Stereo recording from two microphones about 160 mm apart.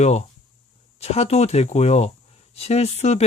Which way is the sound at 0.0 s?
40° left (ahead or behind).